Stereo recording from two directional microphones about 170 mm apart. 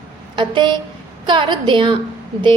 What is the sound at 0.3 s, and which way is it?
A woman's voice, 30° right (ahead or behind).